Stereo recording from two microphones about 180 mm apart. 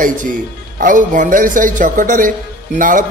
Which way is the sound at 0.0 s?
50° right (ahead or behind).